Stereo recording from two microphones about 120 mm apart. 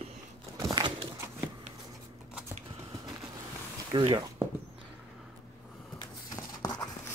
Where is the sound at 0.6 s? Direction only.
35° right (ahead or behind).